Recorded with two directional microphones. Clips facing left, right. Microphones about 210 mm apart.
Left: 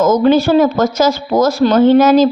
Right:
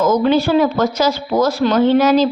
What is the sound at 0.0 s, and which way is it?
Speech, 45° left (ahead or behind).